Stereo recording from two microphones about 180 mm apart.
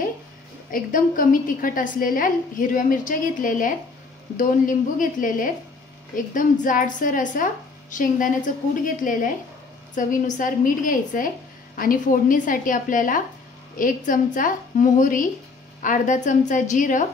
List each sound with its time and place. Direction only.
0.7 s a woman's voice: 50° left (ahead or behind)